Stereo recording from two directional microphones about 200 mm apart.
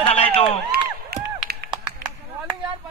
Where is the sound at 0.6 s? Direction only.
55° right (ahead or behind).